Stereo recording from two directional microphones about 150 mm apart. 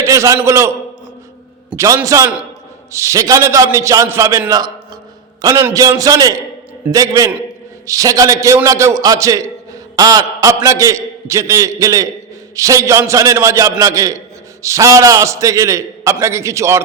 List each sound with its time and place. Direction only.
0.0 s a sound: 20° right (ahead or behind)
0.4 s a man's voice: 20° right (ahead or behind)
1.7 s a man's voice: 20° right (ahead or behind)